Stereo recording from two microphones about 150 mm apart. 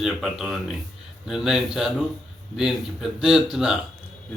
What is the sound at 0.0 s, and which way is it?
A man's voice, 5° right (ahead or behind).